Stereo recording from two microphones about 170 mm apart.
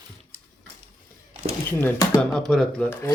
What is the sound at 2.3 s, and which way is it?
Speech, 5° left (ahead or behind).